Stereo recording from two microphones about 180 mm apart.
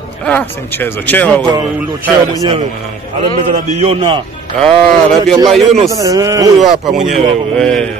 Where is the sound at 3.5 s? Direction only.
35° right (ahead or behind).